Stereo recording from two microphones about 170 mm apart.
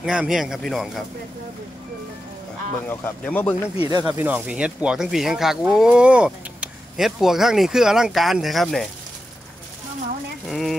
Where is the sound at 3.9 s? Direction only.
25° right (ahead or behind).